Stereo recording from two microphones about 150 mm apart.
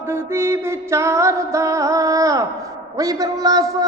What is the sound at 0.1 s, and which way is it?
Music, 15° right (ahead or behind).